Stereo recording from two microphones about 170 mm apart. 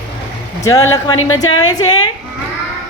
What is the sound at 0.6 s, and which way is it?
A woman's voice, 20° left (ahead or behind).